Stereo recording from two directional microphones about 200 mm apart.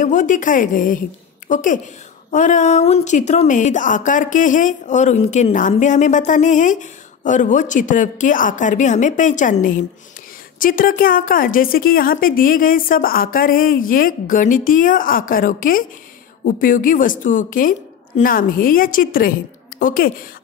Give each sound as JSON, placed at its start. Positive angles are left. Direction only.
{"t": 0.0, "sound": "a woman's voice", "side_deg": 40}